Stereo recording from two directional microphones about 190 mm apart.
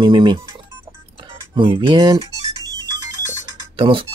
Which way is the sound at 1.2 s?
25° right (ahead or behind).